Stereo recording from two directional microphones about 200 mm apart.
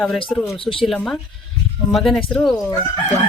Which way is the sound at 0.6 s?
25° left (ahead or behind).